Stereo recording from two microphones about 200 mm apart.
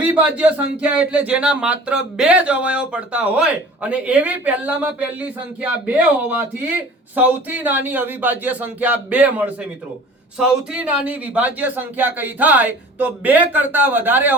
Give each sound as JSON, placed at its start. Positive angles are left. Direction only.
{"t": 0.1, "sound": "speech", "side_deg": -5}